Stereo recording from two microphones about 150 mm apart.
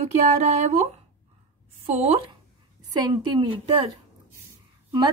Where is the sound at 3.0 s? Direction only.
30° right (ahead or behind).